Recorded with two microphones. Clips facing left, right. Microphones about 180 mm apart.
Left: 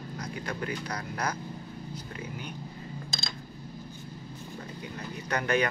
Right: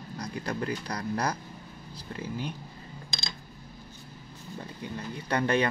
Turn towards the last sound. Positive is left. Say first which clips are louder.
# right 2 dB
turn(degrees=-30)  # may be behind; listen again after turning